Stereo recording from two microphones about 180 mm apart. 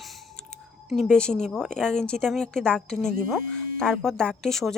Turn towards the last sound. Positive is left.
turn(degrees=0)  # may be behind; listen again after turning